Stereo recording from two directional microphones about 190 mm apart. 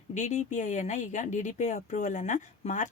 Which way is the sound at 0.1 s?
40° left (ahead or behind).